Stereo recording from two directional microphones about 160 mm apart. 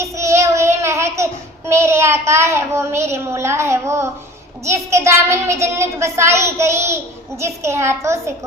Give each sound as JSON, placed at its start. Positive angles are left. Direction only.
{"t": 0.0, "sound": "child singing", "side_deg": -15}
{"t": 4.6, "sound": "a child's voice", "side_deg": -20}